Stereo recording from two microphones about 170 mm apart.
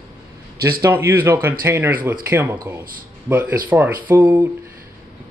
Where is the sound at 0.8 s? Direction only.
15° right (ahead or behind).